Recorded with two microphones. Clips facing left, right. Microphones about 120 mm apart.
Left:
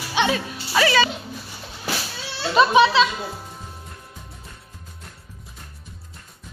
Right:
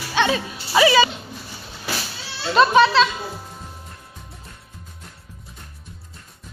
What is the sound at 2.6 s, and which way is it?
Speech, 10° left (ahead or behind).